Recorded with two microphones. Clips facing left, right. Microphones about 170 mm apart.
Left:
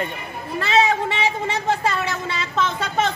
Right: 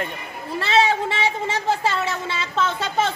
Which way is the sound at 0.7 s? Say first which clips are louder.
Even; 30° right (ahead or behind).